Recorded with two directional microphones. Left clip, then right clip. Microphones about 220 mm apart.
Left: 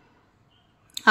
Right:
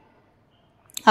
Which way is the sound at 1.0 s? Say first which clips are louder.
Right 2 dB; 10° right (ahead or behind).